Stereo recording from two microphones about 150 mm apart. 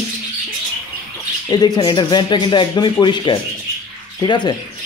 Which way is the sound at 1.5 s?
25° left (ahead or behind).